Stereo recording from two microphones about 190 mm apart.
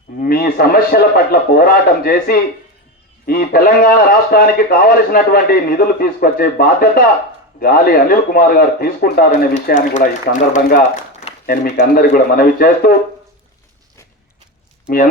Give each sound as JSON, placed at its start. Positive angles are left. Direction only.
{"t": 0.2, "sound": "a man's voice", "side_deg": 50}
{"t": 11.4, "sound": "a man's voice", "side_deg": 55}